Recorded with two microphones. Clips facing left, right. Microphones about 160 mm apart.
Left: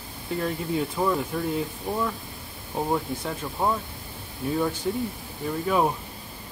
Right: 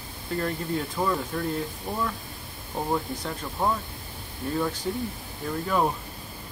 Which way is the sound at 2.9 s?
5° left (ahead or behind).